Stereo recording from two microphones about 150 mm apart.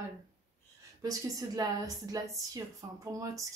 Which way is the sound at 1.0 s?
25° right (ahead or behind).